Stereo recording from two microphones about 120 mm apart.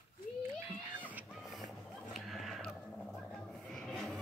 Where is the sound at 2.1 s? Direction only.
Centre (ahead or behind).